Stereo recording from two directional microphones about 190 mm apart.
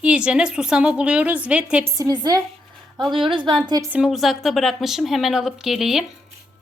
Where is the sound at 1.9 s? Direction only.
20° right (ahead or behind).